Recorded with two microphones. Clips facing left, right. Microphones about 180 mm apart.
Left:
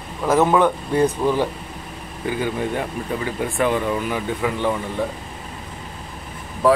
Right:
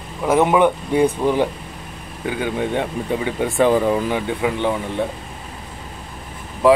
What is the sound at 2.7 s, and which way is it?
Speech, 20° right (ahead or behind).